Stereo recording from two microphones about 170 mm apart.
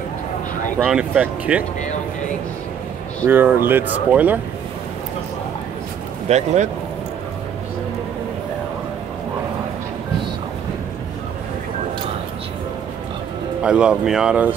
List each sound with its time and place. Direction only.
0.8 s speech: 5° right (ahead or behind)
3.3 s speech: 10° right (ahead or behind)
6.2 s speech: 40° right (ahead or behind)
13.6 s speech: 5° right (ahead or behind)